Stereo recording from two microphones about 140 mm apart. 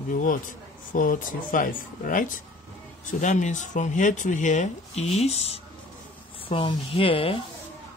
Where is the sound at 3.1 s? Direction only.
60° left (ahead or behind); by 7.3 s 40° left (ahead or behind).